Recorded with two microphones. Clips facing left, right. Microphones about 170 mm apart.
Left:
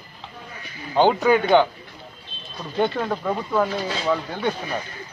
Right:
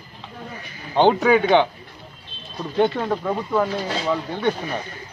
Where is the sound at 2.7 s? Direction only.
10° right (ahead or behind).